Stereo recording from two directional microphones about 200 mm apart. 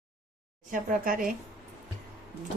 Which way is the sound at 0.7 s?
40° right (ahead or behind).